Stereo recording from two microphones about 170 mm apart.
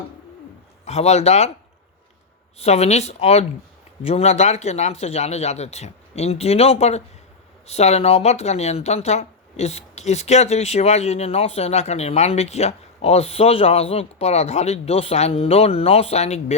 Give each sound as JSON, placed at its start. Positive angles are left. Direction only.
{"t": 0.9, "sound": "speech", "side_deg": 40}
{"t": 2.6, "sound": "speech", "side_deg": 40}